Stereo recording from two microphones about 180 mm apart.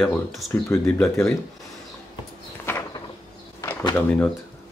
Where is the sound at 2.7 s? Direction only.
15° left (ahead or behind).